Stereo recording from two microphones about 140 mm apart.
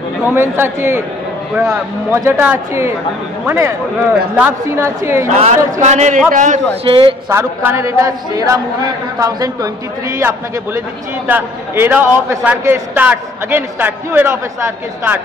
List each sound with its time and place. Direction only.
0.3 s a man's voice: 15° right (ahead or behind)
2.1 s a man's voice: 20° right (ahead or behind)
5.3 s a man's voice: 55° right (ahead or behind)
6.8 s a man's voice: 40° right (ahead or behind)
7.2 s a man's voice: 20° right (ahead or behind)